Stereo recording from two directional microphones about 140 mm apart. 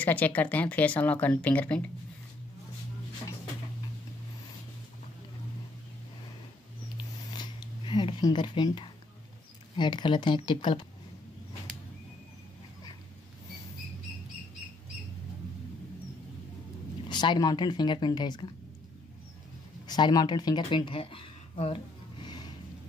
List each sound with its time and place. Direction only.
0.0 s speech: 10° left (ahead or behind)
7.3 s a sound: 30° left (ahead or behind)
9.8 s speech: 35° left (ahead or behind)
17.1 s speech: 30° left (ahead or behind)
19.9 s speech: 30° left (ahead or behind)